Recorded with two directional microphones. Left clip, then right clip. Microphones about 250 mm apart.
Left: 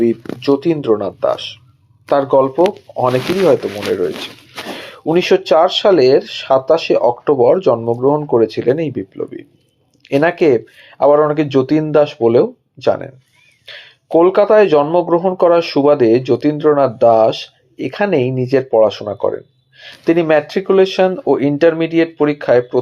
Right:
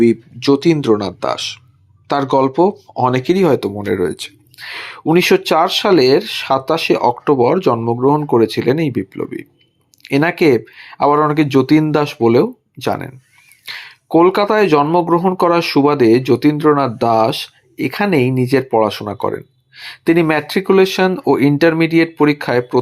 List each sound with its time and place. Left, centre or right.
0.4 s speech: right
4.7 s speech: right